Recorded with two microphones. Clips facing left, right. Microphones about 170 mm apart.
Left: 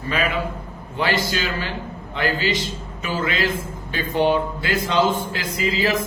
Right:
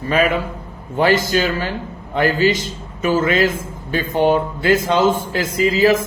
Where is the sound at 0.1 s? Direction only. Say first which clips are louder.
Right 6 dB; 45° right (ahead or behind).